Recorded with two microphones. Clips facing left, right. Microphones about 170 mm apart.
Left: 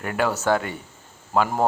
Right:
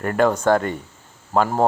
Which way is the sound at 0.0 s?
5° left (ahead or behind).